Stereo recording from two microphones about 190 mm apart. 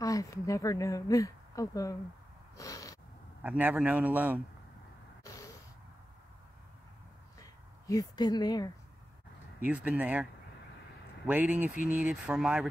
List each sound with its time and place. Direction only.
0.0 s speech: 20° left (ahead or behind)
2.5 s snort: 15° left (ahead or behind)
3.4 s a man's voice: 10° right (ahead or behind)
7.3 s a sound: 20° left (ahead or behind)
9.6 s a man's voice: 5° right (ahead or behind)
11.2 s a man's voice: 10° right (ahead or behind)